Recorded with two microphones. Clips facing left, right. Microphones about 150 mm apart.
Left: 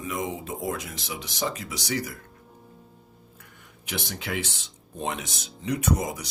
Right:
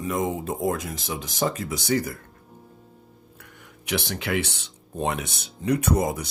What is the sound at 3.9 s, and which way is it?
Speech, 70° right (ahead or behind).